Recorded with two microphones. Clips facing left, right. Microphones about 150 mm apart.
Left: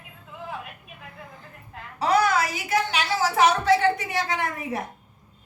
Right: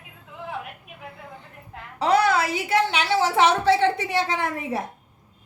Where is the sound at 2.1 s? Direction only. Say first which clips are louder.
Right 2 dB; 25° right (ahead or behind).